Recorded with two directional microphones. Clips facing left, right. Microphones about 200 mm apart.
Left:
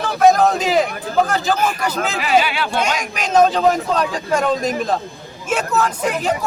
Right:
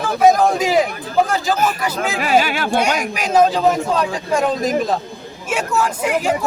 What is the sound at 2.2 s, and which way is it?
Speech, 45° right (ahead or behind).